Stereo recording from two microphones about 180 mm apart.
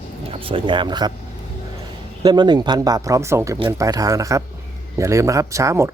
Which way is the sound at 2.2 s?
25° right (ahead or behind).